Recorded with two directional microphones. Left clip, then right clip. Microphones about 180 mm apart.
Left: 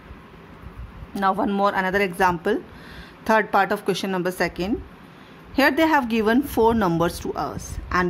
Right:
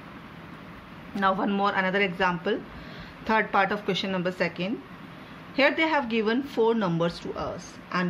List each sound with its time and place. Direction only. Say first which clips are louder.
1.1 s speech: left 3 dB; 50° left (ahead or behind); by 7.5 s 70° left (ahead or behind)